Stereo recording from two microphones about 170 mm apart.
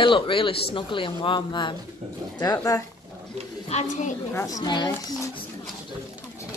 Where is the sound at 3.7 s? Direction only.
40° left (ahead or behind).